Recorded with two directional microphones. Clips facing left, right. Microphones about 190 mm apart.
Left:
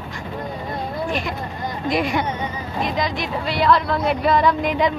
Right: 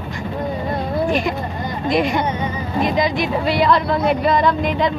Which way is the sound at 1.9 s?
5° left (ahead or behind).